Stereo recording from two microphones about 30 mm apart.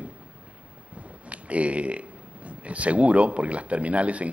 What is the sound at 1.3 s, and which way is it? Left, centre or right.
Speech, right.